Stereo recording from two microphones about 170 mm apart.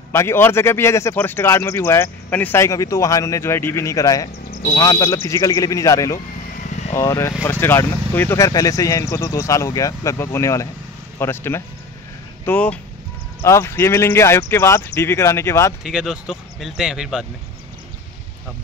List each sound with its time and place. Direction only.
0.1 s speech: 15° left (ahead or behind)
15.8 s speech: 5° right (ahead or behind)